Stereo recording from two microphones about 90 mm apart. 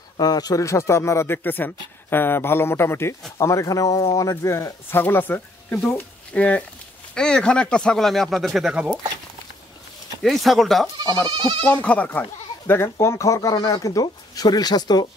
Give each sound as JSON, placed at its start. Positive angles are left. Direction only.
{"t": 0.2, "sound": "a man's voice", "side_deg": 45}
{"t": 5.0, "sound": "speech", "side_deg": 20}
{"t": 8.7, "sound": "speech", "side_deg": -10}
{"t": 10.2, "sound": "speech", "side_deg": 0}
{"t": 11.2, "sound": "speech", "side_deg": -55}
{"t": 11.8, "sound": "a man's voice", "side_deg": 15}
{"t": 13.6, "sound": "speech", "side_deg": 50}